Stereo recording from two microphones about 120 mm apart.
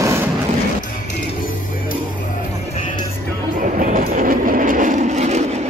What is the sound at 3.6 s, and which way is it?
Train, 90° right.